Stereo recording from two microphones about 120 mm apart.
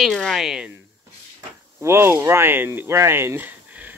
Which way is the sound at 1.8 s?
20° right (ahead or behind).